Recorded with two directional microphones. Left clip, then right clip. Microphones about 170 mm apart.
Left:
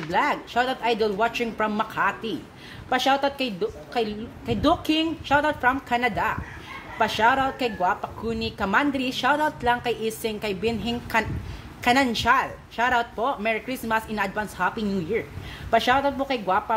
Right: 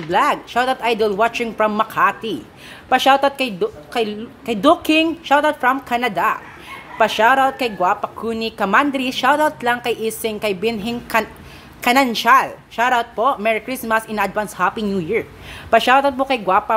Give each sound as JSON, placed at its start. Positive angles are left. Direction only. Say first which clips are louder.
{"t": 0.1, "sound": "speech", "louder": "right 7 dB", "side_deg": -35}